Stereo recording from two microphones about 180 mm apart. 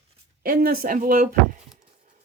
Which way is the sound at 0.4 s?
50° right (ahead or behind).